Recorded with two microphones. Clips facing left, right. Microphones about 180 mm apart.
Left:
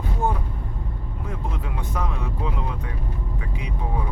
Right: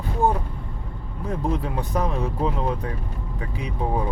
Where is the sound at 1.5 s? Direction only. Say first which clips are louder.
Right 6 dB; 35° right (ahead or behind).